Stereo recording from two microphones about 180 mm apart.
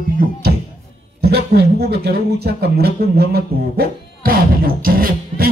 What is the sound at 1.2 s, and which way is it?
A man's voice, 60° right (ahead or behind).